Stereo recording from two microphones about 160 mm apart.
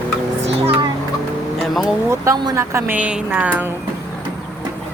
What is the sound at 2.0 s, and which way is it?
Speech, 20° right (ahead or behind).